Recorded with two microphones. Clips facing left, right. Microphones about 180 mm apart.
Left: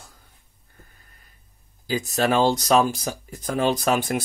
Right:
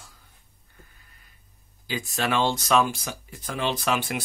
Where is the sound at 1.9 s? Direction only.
40° left (ahead or behind).